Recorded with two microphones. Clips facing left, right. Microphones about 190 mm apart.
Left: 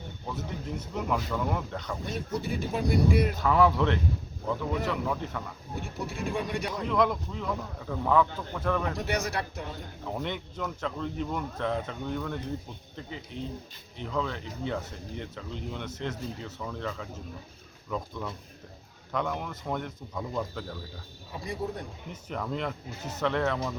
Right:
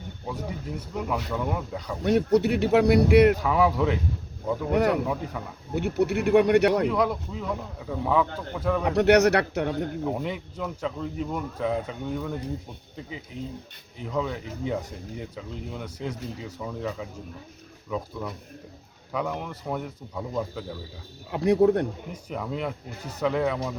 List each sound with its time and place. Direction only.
0.8 s speech: 5° right (ahead or behind)
2.0 s speech: 70° right (ahead or behind)
3.4 s speech: 10° right (ahead or behind)
4.7 s speech: 70° right (ahead or behind)
5.0 s speech: 10° right (ahead or behind)
5.7 s speech: 70° right (ahead or behind)
6.8 s speech: 10° right (ahead or behind)
8.9 s speech: 70° right (ahead or behind)
10.1 s speech: 5° right (ahead or behind)
21.2 s speech: 70° right (ahead or behind)
22.1 s speech: 10° right (ahead or behind)